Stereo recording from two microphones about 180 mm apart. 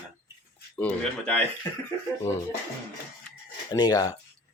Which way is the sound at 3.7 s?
20° left (ahead or behind).